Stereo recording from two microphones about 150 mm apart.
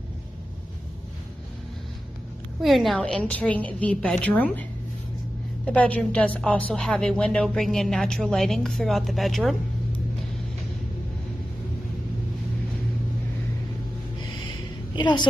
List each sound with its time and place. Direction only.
2.6 s a woman's voice: centre (ahead or behind)
5.7 s a woman's voice: 10° left (ahead or behind)
15.0 s a woman's voice: 30° left (ahead or behind)